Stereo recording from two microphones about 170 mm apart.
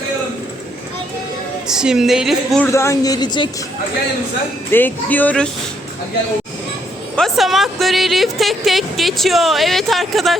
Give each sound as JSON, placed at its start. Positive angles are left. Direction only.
{"t": 1.6, "sound": "speech", "side_deg": -5}
{"t": 2.7, "sound": "a woman's voice", "side_deg": 15}
{"t": 4.7, "sound": "speech", "side_deg": 10}
{"t": 7.2, "sound": "speech", "side_deg": 0}